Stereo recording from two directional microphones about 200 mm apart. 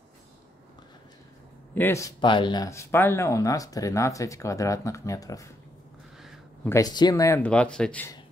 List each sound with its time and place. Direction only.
1.8 s speech: 15° left (ahead or behind)
6.2 s a sound: centre (ahead or behind)
6.7 s speech: 20° left (ahead or behind)